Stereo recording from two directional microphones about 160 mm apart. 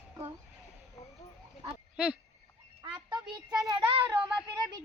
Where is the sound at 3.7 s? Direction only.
35° right (ahead or behind).